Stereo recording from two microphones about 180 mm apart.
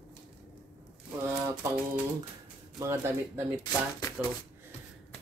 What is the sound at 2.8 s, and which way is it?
Speech, 15° right (ahead or behind).